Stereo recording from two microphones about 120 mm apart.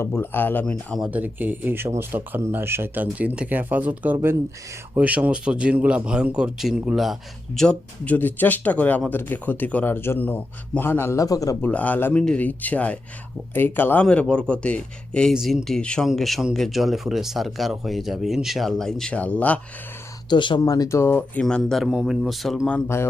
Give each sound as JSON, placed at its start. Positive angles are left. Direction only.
{"t": 0.0, "sound": "a man's voice", "side_deg": 20}
{"t": 1.0, "sound": "a man's voice", "side_deg": -15}
{"t": 11.6, "sound": "a man's voice", "side_deg": 15}
{"t": 20.3, "sound": "speech", "side_deg": 40}
{"t": 20.6, "sound": "speech", "side_deg": 30}
{"t": 21.4, "sound": "speech", "side_deg": 5}